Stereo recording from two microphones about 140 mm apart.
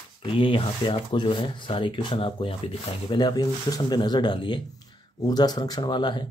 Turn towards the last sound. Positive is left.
turn(degrees=35)  # may be behind; listen again after turning